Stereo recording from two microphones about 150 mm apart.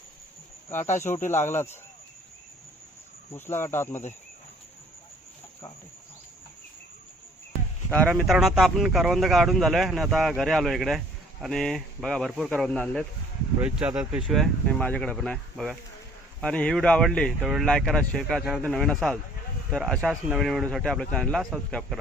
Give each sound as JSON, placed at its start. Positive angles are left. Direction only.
{"t": 0.9, "sound": "speech", "side_deg": 15}
{"t": 3.3, "sound": "speech", "side_deg": 15}
{"t": 7.9, "sound": "speech", "side_deg": 10}
{"t": 8.1, "sound": "speech", "side_deg": 0}
{"t": 13.6, "sound": "speech", "side_deg": -10}